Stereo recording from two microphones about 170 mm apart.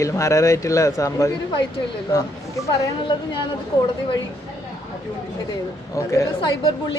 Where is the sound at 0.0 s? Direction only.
15° left (ahead or behind).